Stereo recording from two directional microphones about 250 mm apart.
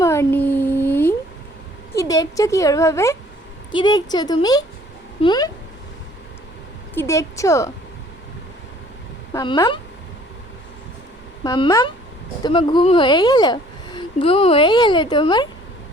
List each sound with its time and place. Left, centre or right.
0.0 s a sound: centre
1.9 s a woman's voice: centre
6.9 s a woman's voice: centre
9.3 s a woman's voice: centre
11.4 s a woman's voice: centre